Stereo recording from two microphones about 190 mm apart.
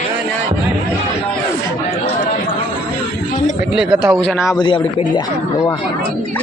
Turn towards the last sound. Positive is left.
turn(degrees=25)  # may be behind; listen again after turning